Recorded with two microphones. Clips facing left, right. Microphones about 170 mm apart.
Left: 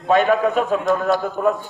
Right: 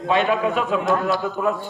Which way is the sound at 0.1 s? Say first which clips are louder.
Left 4 dB; 45° left (ahead or behind).